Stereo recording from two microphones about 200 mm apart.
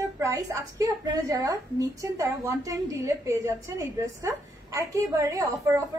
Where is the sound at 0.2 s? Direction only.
15° right (ahead or behind).